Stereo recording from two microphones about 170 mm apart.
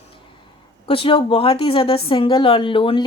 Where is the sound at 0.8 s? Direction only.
30° left (ahead or behind).